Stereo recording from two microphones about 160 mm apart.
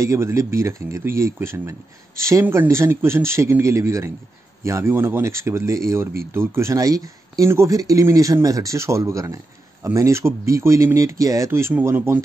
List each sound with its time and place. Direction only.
0.0 s speech: 20° right (ahead or behind)